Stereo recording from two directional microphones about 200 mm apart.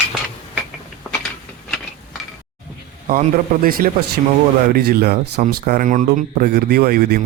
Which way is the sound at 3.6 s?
45° right (ahead or behind).